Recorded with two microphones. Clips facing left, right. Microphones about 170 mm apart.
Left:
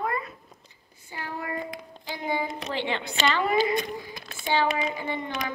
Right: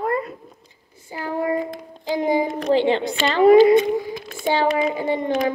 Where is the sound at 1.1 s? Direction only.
35° right (ahead or behind).